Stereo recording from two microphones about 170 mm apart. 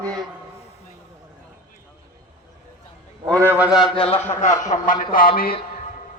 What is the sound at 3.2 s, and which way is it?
Speech, 20° right (ahead or behind).